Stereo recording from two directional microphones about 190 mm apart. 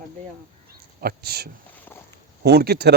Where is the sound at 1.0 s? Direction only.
55° right (ahead or behind).